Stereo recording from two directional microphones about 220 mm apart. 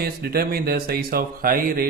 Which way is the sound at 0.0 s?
45° right (ahead or behind).